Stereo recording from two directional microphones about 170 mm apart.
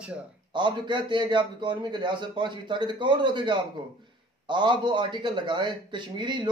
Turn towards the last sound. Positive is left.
turn(degrees=-25)  # may be behind; listen again after turning